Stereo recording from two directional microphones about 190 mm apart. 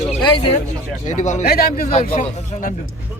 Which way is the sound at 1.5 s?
55° left (ahead or behind).